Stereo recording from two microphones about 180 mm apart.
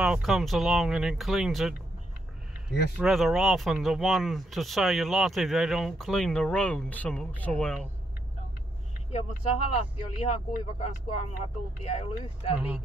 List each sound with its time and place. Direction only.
0.0 s speech: 5° right (ahead or behind)
3.0 s speech: centre (ahead or behind)
9.1 s speech: 35° left (ahead or behind)